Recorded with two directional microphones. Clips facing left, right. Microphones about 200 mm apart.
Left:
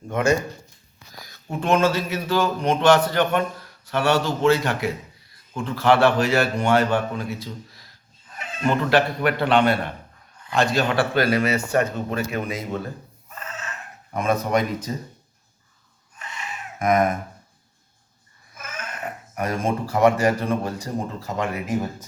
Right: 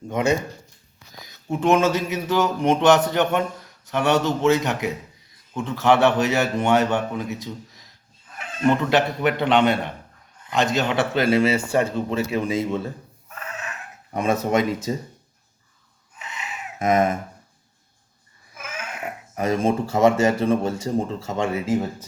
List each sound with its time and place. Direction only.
1.1 s a man's voice: 20° right (ahead or behind)
8.9 s a man's voice: 20° right (ahead or behind)
13.5 s fowl: 15° right (ahead or behind)
14.2 s a man's voice: 25° right (ahead or behind)
16.8 s a man's voice: 25° right (ahead or behind)
18.5 s a sound: 10° right (ahead or behind)
19.4 s a man's voice: 25° right (ahead or behind)